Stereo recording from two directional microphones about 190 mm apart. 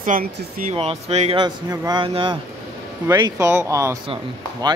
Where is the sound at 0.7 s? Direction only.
35° right (ahead or behind).